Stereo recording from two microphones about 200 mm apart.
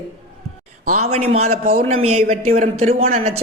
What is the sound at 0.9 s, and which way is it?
Speech, 35° right (ahead or behind).